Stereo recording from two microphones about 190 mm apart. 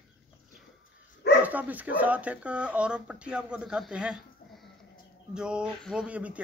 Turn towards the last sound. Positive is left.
turn(degrees=-5)  # may be behind; listen again after turning